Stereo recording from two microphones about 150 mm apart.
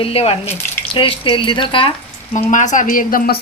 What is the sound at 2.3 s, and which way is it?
Speech, 55° left (ahead or behind).